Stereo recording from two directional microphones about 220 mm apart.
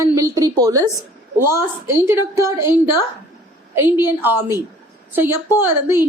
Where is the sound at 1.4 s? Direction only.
10° right (ahead or behind).